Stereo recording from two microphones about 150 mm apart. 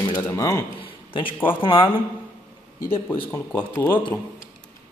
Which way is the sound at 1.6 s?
35° left (ahead or behind).